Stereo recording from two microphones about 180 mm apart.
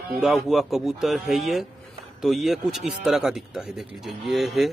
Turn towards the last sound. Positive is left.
turn(degrees=0)  # may be behind; listen again after turning